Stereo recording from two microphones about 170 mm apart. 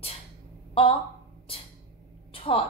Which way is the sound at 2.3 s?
30° left (ahead or behind).